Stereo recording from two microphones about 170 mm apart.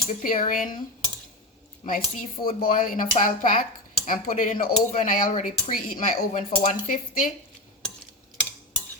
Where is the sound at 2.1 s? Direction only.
60° left (ahead or behind).